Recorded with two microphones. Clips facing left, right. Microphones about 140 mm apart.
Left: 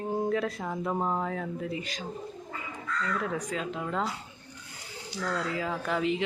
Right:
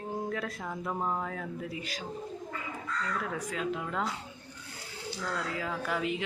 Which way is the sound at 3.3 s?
Centre (ahead or behind).